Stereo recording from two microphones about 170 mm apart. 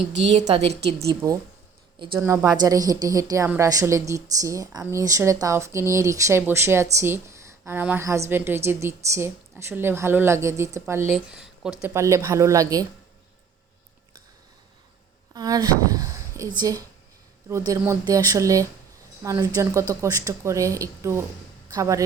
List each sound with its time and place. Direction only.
0.1 s a woman's voice: 90° right
0.3 s a woman's voice: 40° right (ahead or behind)
1.2 s a woman's voice: 20° right (ahead or behind)
11.3 s a sound: 5° right (ahead or behind)
11.8 s a woman's voice: 15° right (ahead or behind)
15.3 s a woman's voice: 20° right (ahead or behind)